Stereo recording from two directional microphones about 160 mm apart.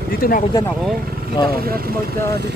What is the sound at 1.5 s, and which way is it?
Speech, 70° right (ahead or behind).